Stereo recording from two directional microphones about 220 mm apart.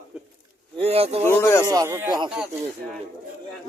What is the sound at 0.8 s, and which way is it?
Speech, 25° right (ahead or behind).